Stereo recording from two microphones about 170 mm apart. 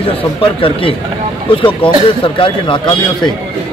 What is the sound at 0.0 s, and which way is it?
Speech, 30° left (ahead or behind).